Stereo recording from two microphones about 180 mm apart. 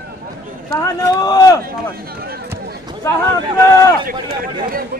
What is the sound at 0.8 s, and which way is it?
Speech, 20° left (ahead or behind).